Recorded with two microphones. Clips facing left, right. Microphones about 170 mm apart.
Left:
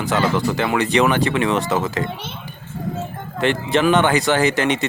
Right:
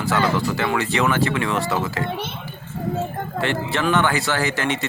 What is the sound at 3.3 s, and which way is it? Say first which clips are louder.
Speech: left 5 dB; 20° left (ahead or behind).